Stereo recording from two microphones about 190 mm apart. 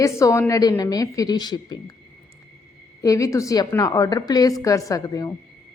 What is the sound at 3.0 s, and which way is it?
A woman's voice, 15° left (ahead or behind).